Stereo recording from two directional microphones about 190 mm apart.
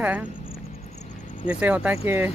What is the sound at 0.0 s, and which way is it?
Speech, 10° right (ahead or behind).